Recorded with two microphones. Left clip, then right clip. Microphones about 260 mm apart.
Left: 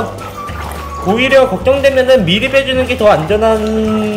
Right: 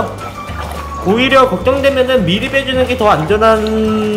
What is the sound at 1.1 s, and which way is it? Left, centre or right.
Speech, centre.